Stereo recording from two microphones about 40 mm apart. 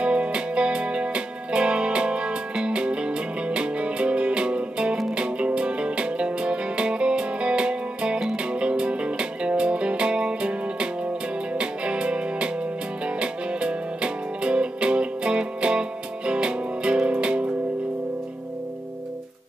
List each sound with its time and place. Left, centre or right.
0.0 s music: right